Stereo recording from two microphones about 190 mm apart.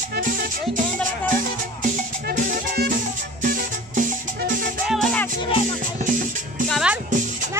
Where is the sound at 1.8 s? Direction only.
45° right (ahead or behind).